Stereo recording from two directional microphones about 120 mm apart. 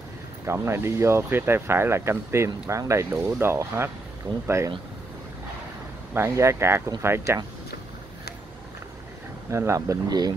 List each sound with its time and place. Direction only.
0.5 s speech: 20° right (ahead or behind)
6.1 s speech: 20° right (ahead or behind)
9.5 s speech: 25° right (ahead or behind)